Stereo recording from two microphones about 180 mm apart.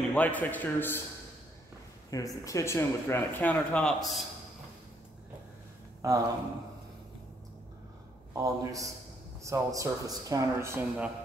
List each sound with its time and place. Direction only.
0.1 s speech: 10° left (ahead or behind)
2.0 s speech: 20° left (ahead or behind); by 4.2 s centre (ahead or behind)
6.0 s speech: 20° right (ahead or behind)
8.3 s speech: 20° right (ahead or behind)